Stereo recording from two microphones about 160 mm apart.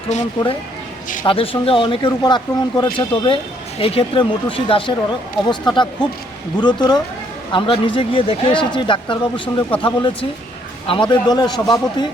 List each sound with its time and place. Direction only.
1.2 s a man's voice: 35° left (ahead or behind)